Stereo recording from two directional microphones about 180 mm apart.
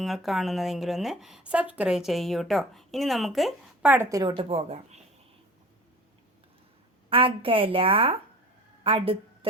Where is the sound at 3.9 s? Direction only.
15° right (ahead or behind); by 5.0 s 35° right (ahead or behind).